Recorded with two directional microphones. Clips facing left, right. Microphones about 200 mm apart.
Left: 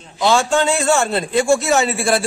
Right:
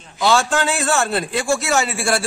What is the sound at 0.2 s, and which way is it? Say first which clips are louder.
A man's voice: left 2 dB; centre (ahead or behind).